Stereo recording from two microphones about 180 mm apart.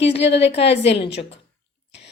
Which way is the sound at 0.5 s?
35° left (ahead or behind).